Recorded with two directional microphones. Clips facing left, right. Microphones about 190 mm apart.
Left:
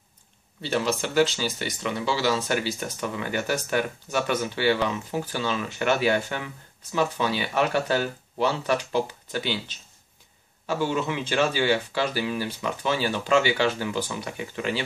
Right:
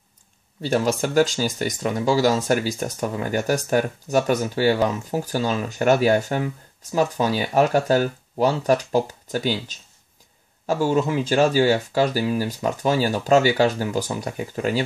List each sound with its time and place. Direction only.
0.6 s speech: 45° right (ahead or behind)